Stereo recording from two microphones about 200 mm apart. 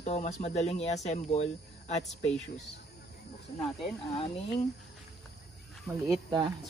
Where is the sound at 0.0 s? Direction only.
35° left (ahead or behind).